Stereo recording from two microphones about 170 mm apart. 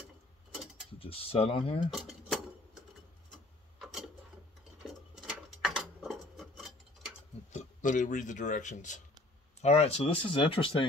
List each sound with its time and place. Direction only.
0.9 s speech: 35° left (ahead or behind)
1.9 s dishes: centre (ahead or behind)
3.8 s a sound: 5° right (ahead or behind)
4.8 s rub: 5° right (ahead or behind)
7.5 s speech: 50° left (ahead or behind); by 10.9 s 30° left (ahead or behind)